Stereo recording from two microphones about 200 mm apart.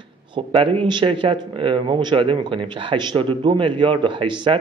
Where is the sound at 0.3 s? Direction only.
25° right (ahead or behind).